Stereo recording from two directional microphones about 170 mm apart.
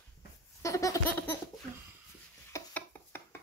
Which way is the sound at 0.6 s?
20° left (ahead or behind).